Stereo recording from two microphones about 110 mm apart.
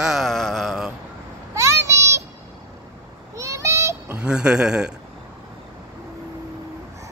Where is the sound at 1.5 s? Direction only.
25° right (ahead or behind).